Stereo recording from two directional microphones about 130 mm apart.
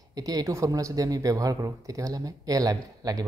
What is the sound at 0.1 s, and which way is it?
A man's voice, 30° right (ahead or behind).